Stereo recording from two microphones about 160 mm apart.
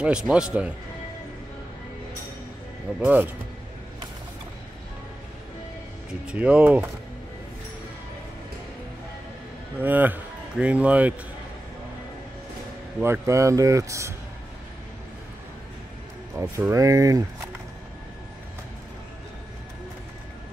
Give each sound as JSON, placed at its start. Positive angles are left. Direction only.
{"t": 0.0, "sound": "speech", "side_deg": -5}
{"t": 3.0, "sound": "speech", "side_deg": -10}
{"t": 6.2, "sound": "speech", "side_deg": -5}
{"t": 9.8, "sound": "speech", "side_deg": -10}
{"t": 13.0, "sound": "speech", "side_deg": -15}
{"t": 16.3, "sound": "speech", "side_deg": -15}